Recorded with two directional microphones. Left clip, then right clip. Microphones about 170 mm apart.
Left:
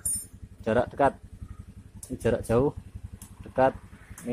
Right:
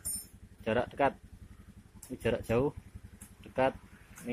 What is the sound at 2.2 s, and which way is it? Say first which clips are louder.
Speech: left 6 dB; 5° left (ahead or behind).